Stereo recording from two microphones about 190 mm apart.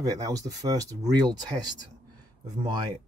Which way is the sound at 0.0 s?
20° right (ahead or behind).